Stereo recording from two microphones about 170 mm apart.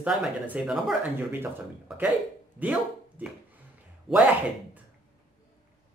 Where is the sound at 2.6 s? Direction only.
10° right (ahead or behind).